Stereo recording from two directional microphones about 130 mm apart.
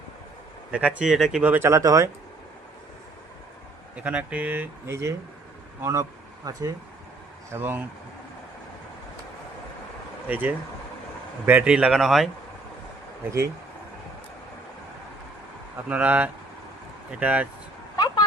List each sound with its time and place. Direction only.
0.7 s speech: 10° right (ahead or behind); by 2.0 s 25° right (ahead or behind)
3.9 s speech: 10° right (ahead or behind); by 6.7 s 25° right (ahead or behind)
7.5 s speech: 15° right (ahead or behind)
10.2 s speech: 15° right (ahead or behind)
15.9 s speech: 10° right (ahead or behind)
17.9 s a sound: 30° left (ahead or behind)